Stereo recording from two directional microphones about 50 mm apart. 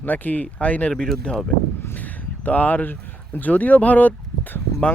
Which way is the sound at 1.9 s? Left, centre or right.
Left.